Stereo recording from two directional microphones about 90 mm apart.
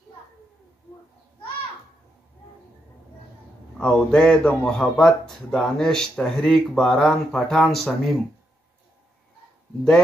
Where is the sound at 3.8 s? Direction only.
10° left (ahead or behind).